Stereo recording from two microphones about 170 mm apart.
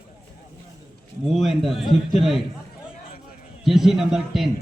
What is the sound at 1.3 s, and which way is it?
A man's voice, centre (ahead or behind).